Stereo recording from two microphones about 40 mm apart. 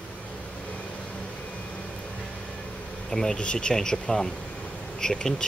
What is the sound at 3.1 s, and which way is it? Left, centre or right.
Speech, centre.